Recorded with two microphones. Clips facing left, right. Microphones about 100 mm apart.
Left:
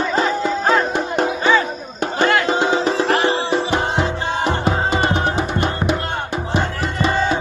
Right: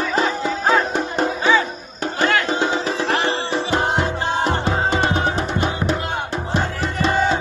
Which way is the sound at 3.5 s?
15° left (ahead or behind).